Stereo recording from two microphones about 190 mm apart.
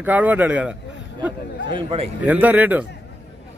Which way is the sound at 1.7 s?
30° right (ahead or behind).